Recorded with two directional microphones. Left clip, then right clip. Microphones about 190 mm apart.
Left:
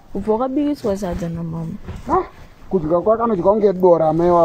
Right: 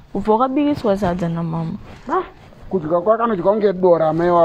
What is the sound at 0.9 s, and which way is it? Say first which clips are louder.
Speech: right 4 dB; 15° right (ahead or behind).